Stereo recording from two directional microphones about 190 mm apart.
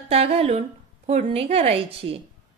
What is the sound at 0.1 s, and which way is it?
A woman's voice, 30° right (ahead or behind).